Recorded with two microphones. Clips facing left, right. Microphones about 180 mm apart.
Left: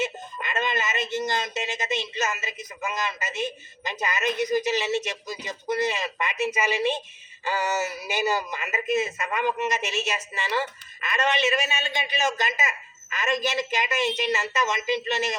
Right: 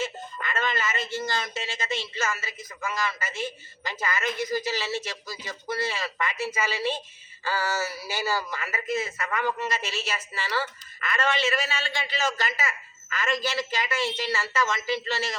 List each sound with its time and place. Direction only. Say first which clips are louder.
0.0 s speech: left 2 dB; 20° left (ahead or behind)